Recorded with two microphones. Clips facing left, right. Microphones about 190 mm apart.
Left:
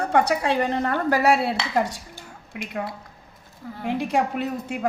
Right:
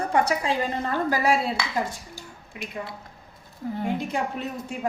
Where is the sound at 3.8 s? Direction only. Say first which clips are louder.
Left 5 dB; 65° left (ahead or behind).